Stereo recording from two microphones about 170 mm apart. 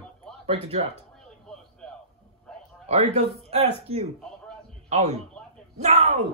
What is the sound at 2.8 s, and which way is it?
A man's voice, 40° right (ahead or behind).